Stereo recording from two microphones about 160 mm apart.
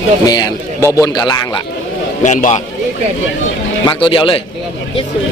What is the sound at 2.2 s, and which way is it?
Speech, 50° left (ahead or behind).